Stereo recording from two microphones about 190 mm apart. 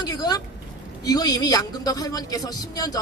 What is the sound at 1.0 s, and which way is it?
A man's voice, 20° left (ahead or behind).